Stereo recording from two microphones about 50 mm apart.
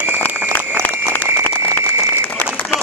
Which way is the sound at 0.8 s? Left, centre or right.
Left.